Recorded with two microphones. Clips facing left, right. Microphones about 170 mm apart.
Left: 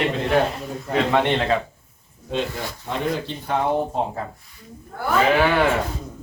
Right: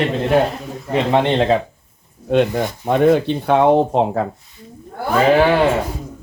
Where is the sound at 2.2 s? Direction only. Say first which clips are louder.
Right 10 dB; 55° right (ahead or behind); by 4.2 s 85° right.